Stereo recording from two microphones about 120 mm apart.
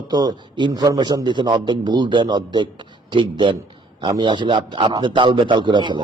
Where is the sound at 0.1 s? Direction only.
35° right (ahead or behind).